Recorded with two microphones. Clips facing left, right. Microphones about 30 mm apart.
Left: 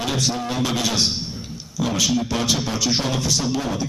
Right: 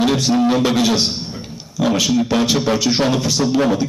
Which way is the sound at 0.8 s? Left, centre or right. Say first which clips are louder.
Right 4 dB; centre.